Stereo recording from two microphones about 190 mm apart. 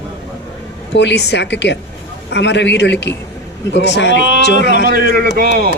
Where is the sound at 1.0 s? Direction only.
65° left (ahead or behind).